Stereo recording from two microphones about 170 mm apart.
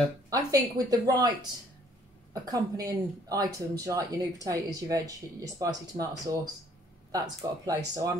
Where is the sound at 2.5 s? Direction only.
20° right (ahead or behind).